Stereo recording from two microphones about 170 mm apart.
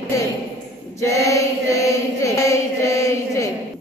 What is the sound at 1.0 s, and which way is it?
Chant, 20° left (ahead or behind).